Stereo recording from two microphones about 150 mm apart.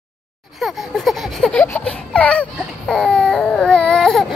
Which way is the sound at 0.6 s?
Centre (ahead or behind).